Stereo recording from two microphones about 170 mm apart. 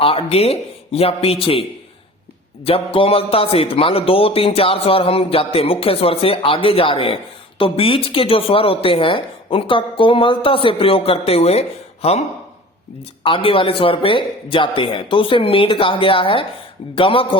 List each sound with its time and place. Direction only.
0.0 s speech: 35° left (ahead or behind)
2.6 s speech: 30° left (ahead or behind)
13.2 s speech: 30° left (ahead or behind)